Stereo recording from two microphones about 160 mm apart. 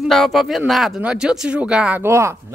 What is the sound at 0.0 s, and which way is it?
Speech, centre (ahead or behind).